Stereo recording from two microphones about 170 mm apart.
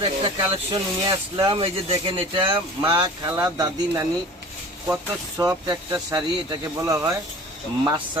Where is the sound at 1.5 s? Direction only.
30° right (ahead or behind).